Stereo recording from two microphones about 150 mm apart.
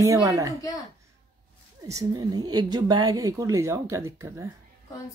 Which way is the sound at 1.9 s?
25° right (ahead or behind).